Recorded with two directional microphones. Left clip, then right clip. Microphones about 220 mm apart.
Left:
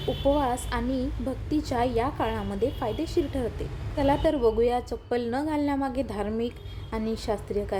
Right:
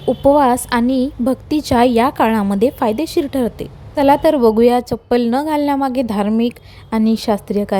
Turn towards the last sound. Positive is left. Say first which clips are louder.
# right 11 dB
turn(degrees=-40)  # may be behind; listen again after turning